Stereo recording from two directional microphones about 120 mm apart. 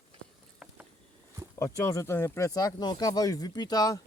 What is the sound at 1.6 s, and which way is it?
Speech, 25° left (ahead or behind).